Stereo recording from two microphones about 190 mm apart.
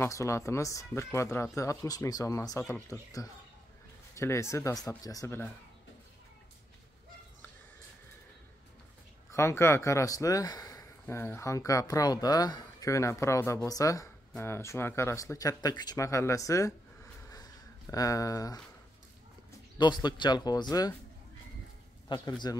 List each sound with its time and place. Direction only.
0.0 s speech: 15° left (ahead or behind)
9.3 s speech: 15° left (ahead or behind)
19.8 s speech: 25° left (ahead or behind)
22.1 s speech: 25° left (ahead or behind)